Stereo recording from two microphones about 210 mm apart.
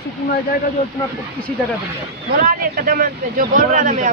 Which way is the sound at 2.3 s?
40° right (ahead or behind).